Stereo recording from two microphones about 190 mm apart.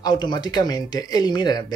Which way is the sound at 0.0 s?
20° left (ahead or behind).